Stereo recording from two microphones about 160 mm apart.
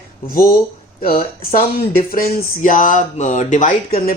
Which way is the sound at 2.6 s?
55° left (ahead or behind).